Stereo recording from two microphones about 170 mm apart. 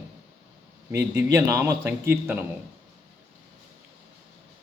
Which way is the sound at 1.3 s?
20° right (ahead or behind).